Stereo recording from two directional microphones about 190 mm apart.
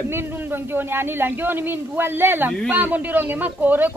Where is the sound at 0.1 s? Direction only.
10° right (ahead or behind).